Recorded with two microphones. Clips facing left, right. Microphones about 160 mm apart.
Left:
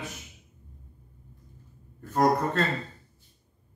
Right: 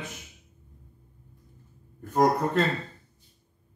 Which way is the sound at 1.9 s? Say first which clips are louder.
Right 1 dB; 15° right (ahead or behind).